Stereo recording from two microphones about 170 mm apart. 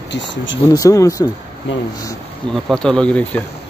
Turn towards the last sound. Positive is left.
turn(degrees=5)  # may be behind; listen again after turning